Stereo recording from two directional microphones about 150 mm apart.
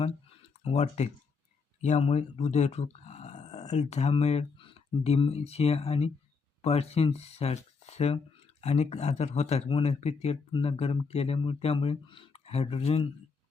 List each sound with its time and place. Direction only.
0.6 s speech: 45° left (ahead or behind)